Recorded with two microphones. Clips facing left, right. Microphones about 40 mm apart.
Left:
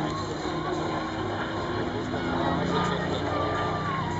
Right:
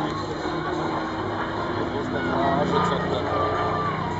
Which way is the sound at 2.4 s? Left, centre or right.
Centre.